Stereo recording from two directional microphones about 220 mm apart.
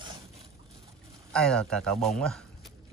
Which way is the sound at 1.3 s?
5° left (ahead or behind).